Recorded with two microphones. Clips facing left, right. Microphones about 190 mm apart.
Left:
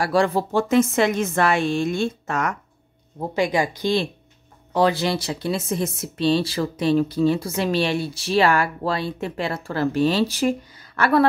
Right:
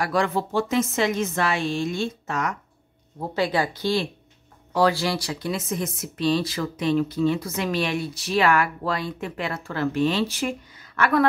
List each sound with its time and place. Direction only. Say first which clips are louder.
0.0 s a woman's voice: left 4 dB; 30° left (ahead or behind); by 2.5 s 55° left (ahead or behind)
3.2 s speech: left 2 dB; 15° left (ahead or behind); by 11.2 s 35° left (ahead or behind)